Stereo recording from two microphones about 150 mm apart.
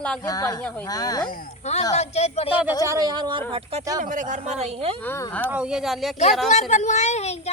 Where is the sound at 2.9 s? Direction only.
25° right (ahead or behind).